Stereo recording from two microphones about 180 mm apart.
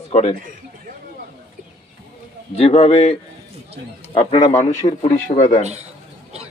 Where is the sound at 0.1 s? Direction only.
35° left (ahead or behind).